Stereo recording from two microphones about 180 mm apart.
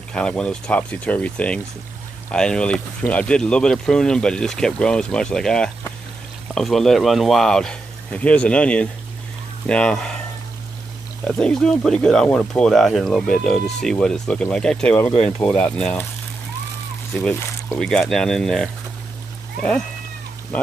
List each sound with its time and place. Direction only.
0.1 s speech: 5° left (ahead or behind)
11.2 s speech: 5° left (ahead or behind)
17.2 s speech: 5° left (ahead or behind)